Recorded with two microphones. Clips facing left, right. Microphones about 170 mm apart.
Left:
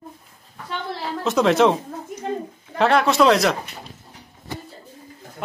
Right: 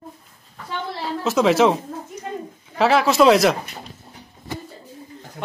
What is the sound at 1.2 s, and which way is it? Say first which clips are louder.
Speech: even; centre (ahead or behind).